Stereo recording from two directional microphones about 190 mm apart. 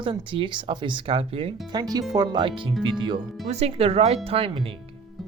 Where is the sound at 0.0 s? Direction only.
25° right (ahead or behind).